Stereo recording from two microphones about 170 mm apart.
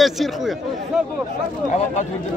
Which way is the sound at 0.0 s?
Centre (ahead or behind).